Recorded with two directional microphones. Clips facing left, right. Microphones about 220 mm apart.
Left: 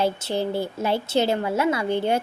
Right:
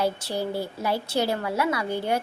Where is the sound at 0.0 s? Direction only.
25° left (ahead or behind).